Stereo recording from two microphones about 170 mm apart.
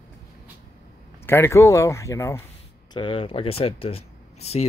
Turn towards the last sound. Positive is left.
turn(degrees=40)  # may be behind; listen again after turning